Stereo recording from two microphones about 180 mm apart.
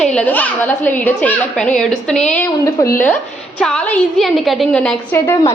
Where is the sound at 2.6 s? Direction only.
15° left (ahead or behind).